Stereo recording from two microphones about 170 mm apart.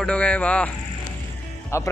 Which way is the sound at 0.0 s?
5° left (ahead or behind).